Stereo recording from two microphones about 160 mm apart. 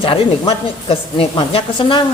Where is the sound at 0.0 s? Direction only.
35° left (ahead or behind).